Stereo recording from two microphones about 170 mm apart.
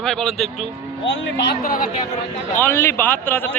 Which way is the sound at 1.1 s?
65° left (ahead or behind).